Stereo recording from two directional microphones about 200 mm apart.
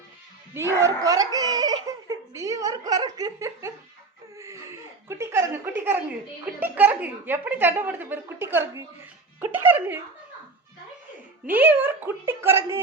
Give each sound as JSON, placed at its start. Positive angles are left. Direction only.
{"t": 0.5, "sound": "speech", "side_deg": -15}
{"t": 5.0, "sound": "a woman's voice", "side_deg": -15}
{"t": 11.5, "sound": "a woman's voice", "side_deg": -10}